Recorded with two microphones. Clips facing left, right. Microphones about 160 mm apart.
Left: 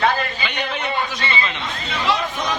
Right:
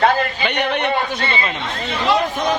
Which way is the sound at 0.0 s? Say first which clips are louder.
Right 4 dB; 65° right (ahead or behind).